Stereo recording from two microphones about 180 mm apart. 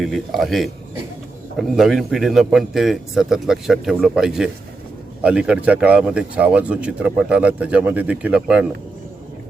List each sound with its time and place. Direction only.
0.0 s a man's voice: centre (ahead or behind)